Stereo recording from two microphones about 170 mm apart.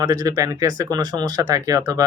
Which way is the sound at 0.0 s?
20° right (ahead or behind).